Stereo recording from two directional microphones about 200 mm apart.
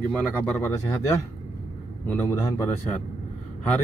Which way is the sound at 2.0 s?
10° left (ahead or behind).